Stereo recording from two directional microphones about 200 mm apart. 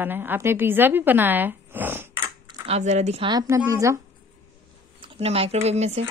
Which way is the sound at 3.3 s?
20° right (ahead or behind).